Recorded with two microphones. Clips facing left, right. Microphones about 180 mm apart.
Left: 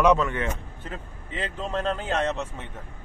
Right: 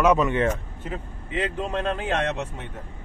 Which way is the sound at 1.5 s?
15° right (ahead or behind).